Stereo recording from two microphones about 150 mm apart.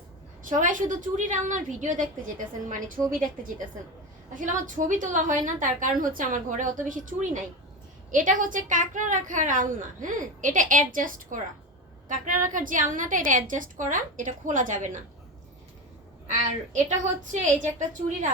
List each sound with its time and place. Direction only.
0.4 s a woman's voice: 60° right (ahead or behind)
17.4 s a woman's voice: 55° right (ahead or behind)